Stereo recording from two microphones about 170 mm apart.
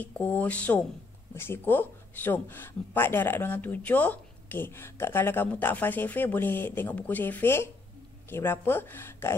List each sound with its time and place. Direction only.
0.0 s speech: 10° left (ahead or behind)